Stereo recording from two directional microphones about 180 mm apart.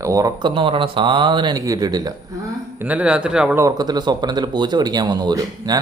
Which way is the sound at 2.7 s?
10° right (ahead or behind).